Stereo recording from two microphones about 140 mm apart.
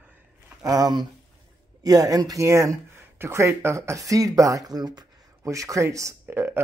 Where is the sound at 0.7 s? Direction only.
25° right (ahead or behind).